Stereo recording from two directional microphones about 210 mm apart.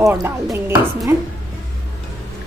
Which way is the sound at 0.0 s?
15° right (ahead or behind).